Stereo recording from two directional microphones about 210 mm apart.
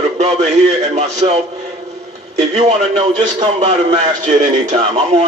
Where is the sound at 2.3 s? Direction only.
30° right (ahead or behind).